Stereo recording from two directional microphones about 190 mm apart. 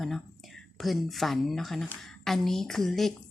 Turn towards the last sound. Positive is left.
turn(degrees=0)  # may be behind; listen again after turning